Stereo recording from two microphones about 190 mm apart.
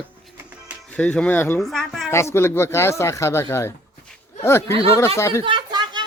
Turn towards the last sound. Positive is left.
turn(degrees=-25)  # may be behind; listen again after turning